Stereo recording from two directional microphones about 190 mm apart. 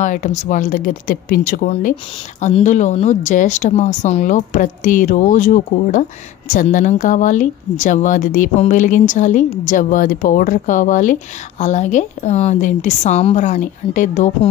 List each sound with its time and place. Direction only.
0.0 s speech: 40° left (ahead or behind)